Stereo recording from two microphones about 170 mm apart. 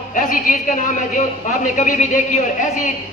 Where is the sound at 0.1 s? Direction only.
50° left (ahead or behind).